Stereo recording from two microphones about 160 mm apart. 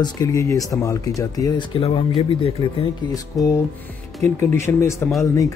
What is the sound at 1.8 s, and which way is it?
Speech, 35° left (ahead or behind).